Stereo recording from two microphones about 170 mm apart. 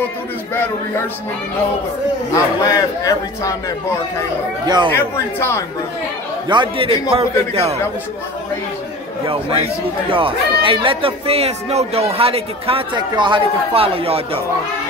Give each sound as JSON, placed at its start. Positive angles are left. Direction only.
{"t": 2.3, "sound": "a man's voice", "side_deg": 20}
{"t": 4.6, "sound": "speech", "side_deg": -25}
{"t": 4.9, "sound": "speech", "side_deg": 15}
{"t": 6.5, "sound": "speech", "side_deg": -30}
{"t": 9.6, "sound": "speech", "side_deg": -30}